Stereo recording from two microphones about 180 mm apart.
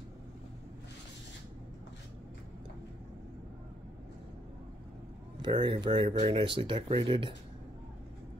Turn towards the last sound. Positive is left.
turn(degrees=-30)  # may be behind; listen again after turning